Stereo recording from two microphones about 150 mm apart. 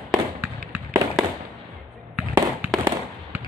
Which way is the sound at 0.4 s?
15° right (ahead or behind).